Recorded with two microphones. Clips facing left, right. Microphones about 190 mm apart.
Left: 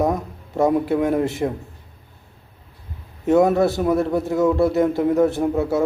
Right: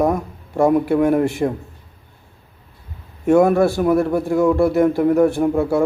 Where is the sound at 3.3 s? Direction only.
20° left (ahead or behind).